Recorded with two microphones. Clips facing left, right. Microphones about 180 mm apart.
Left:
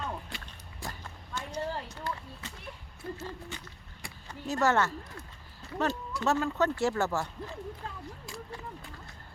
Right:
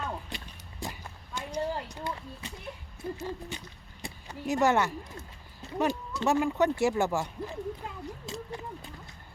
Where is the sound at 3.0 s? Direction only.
15° right (ahead or behind).